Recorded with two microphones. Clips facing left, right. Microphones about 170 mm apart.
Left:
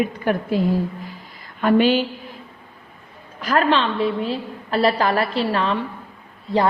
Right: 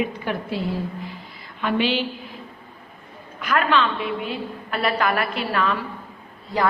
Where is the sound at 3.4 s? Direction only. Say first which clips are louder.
Left 2 dB; 35° left (ahead or behind).